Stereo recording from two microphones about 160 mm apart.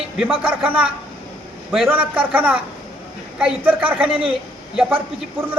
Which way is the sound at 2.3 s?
10° right (ahead or behind).